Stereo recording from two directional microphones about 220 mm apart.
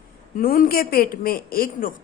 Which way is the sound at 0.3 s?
40° left (ahead or behind).